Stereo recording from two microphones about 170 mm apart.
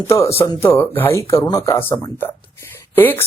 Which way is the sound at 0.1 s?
15° left (ahead or behind).